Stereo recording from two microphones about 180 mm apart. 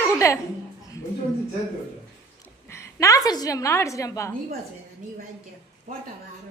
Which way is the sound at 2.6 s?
15° left (ahead or behind).